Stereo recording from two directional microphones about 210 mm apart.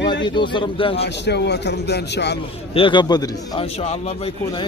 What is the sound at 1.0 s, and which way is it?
Speech, 55° left (ahead or behind).